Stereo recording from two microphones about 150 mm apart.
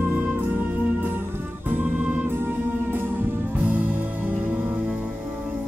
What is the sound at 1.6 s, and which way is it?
Music, 10° right (ahead or behind).